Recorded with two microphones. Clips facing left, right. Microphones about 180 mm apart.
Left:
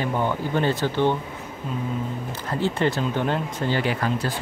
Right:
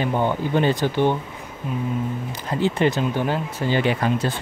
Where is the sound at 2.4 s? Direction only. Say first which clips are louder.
Right 3 dB; 15° right (ahead or behind).